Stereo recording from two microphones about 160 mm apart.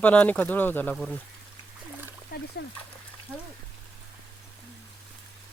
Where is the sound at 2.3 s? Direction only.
75° left (ahead or behind).